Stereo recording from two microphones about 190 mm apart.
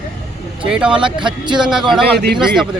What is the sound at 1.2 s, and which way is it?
Speech, 25° right (ahead or behind).